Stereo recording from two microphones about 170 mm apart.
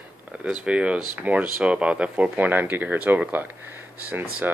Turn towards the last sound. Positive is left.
turn(degrees=-10)  # may be behind; listen again after turning